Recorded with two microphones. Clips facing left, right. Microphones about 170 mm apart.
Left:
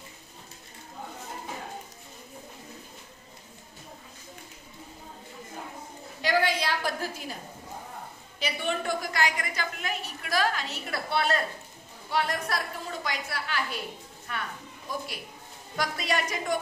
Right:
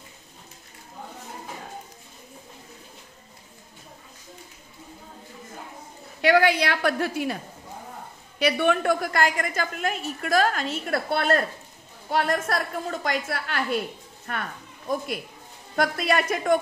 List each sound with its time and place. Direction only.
6.2 s a woman's voice: 65° right (ahead or behind)
8.4 s a woman's voice: 65° right (ahead or behind)
15.7 s a woman's voice: 55° right (ahead or behind)